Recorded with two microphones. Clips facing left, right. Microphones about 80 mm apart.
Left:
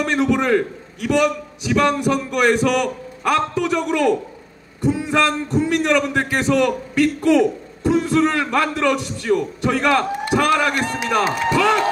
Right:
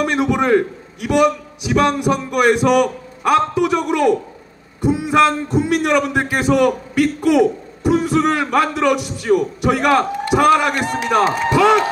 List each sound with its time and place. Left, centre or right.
0.0 s a man's voice: centre